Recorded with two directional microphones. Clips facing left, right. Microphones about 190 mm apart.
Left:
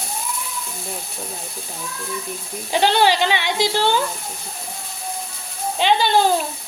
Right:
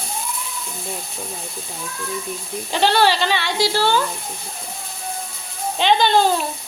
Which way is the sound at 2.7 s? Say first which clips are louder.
Left 1 dB; 15° left (ahead or behind).